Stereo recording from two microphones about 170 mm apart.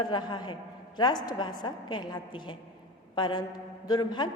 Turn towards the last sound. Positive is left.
turn(degrees=25)  # may be behind; listen again after turning